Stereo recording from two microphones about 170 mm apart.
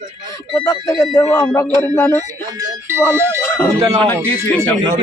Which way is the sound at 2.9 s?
15° right (ahead or behind).